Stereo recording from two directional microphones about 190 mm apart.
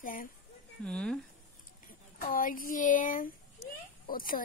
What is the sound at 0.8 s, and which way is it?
Speech, 5° left (ahead or behind).